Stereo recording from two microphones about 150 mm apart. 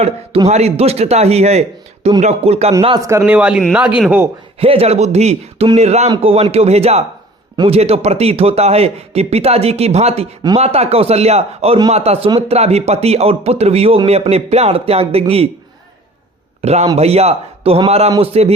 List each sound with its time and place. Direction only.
0.0 s speech: 45° right (ahead or behind)
3.0 s speech: 15° right (ahead or behind)
4.6 s speech: 40° right (ahead or behind)
16.6 s a man's voice: 45° right (ahead or behind)